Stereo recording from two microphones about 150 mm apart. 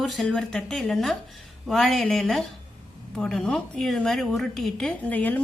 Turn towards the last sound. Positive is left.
turn(degrees=10)  # may be behind; listen again after turning